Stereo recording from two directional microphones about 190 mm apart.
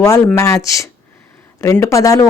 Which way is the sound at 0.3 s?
15° left (ahead or behind).